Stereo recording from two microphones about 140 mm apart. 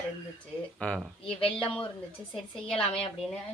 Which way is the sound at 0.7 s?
5° left (ahead or behind).